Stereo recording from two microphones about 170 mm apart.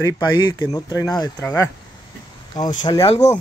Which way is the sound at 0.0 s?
25° left (ahead or behind).